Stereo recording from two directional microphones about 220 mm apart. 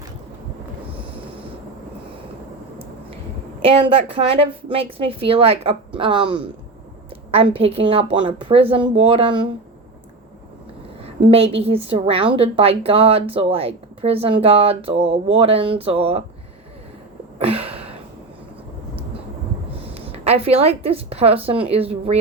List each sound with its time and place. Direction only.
3.6 s a woman's voice: 25° right (ahead or behind)
11.3 s a woman's voice: 25° right (ahead or behind)
17.3 s a sound: 25° right (ahead or behind)
19.9 s speech: 25° right (ahead or behind)